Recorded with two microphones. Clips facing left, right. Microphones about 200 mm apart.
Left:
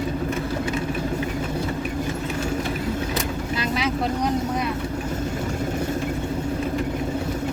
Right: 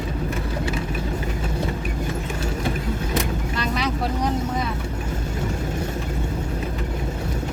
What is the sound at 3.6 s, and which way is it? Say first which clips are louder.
Vehicle: even; 5° left (ahead or behind).